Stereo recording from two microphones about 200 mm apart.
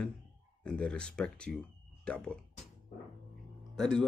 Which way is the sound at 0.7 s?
5° left (ahead or behind).